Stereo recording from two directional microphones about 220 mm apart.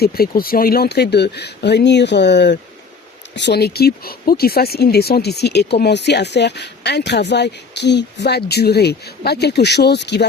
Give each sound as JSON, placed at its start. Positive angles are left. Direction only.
{"t": 0.0, "sound": "speech", "side_deg": 45}